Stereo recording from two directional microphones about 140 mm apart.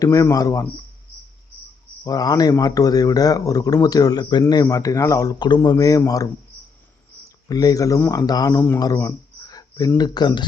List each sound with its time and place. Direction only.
0.0 s speech: 25° left (ahead or behind)
2.0 s speech: 25° left (ahead or behind)
7.4 s speech: 25° left (ahead or behind)
8.8 s a sound: 25° left (ahead or behind)
10.0 s speech: 30° left (ahead or behind)